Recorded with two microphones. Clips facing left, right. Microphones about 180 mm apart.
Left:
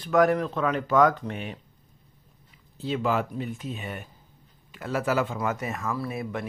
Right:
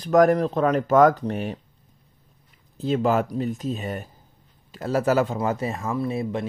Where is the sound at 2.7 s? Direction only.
45° right (ahead or behind).